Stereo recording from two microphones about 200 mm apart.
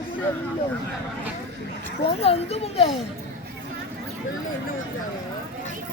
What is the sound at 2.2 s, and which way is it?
Speech, 30° left (ahead or behind).